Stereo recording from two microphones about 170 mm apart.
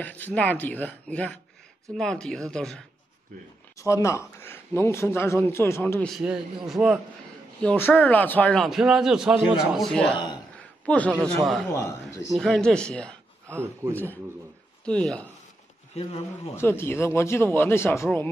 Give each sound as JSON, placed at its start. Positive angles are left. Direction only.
{"t": 0.0, "sound": "a man's voice", "side_deg": 10}
{"t": 3.7, "sound": "speech", "side_deg": 20}
{"t": 6.0, "sound": "a man's voice", "side_deg": 0}
{"t": 7.6, "sound": "speech", "side_deg": 10}
{"t": 8.6, "sound": "a man's voice", "side_deg": -5}
{"t": 10.1, "sound": "speech", "side_deg": 25}
{"t": 11.1, "sound": "a man's voice", "side_deg": 5}
{"t": 11.7, "sound": "speech", "side_deg": 15}
{"t": 12.4, "sound": "a man's voice", "side_deg": 5}
{"t": 13.5, "sound": "speech", "side_deg": -15}
{"t": 14.9, "sound": "a man's voice", "side_deg": 5}
{"t": 15.9, "sound": "speech", "side_deg": 35}
{"t": 16.5, "sound": "speech", "side_deg": 15}